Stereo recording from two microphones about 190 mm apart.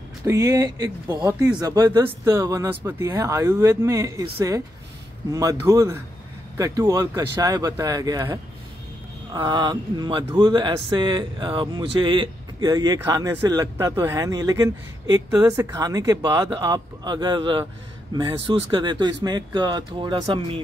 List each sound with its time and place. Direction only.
0.2 s speech: 15° right (ahead or behind)